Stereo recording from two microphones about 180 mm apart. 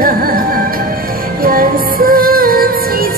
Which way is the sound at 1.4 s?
50° right (ahead or behind).